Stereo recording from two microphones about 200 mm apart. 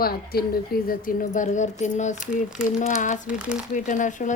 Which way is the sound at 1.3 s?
35° left (ahead or behind).